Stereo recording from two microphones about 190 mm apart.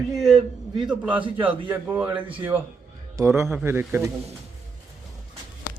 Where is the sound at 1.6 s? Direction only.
10° right (ahead or behind).